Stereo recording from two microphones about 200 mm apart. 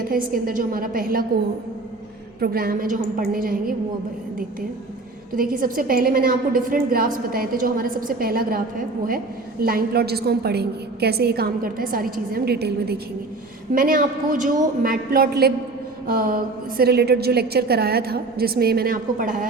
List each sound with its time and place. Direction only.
0.1 s a woman's voice: 45° right (ahead or behind)
2.4 s a woman's voice: 45° right (ahead or behind)
5.3 s a woman's voice: 45° right (ahead or behind)